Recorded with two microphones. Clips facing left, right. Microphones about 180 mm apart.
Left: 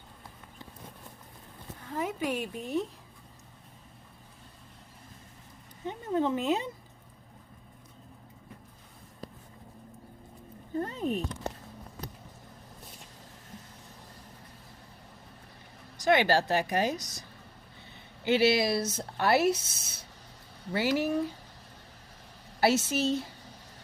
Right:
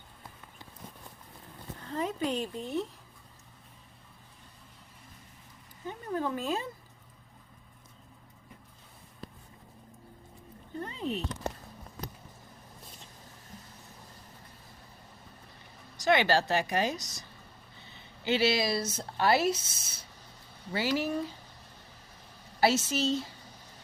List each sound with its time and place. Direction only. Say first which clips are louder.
1.8 s a woman's voice: even; 10° left (ahead or behind)
5.8 s speech: left 4 dB; 25° left (ahead or behind)
10.8 s a sound: left 4 dB; 45° left (ahead or behind)
16.0 s a woman's voice: left 1 dB; 50° left (ahead or behind)
22.6 s speech: left 1 dB; 60° left (ahead or behind)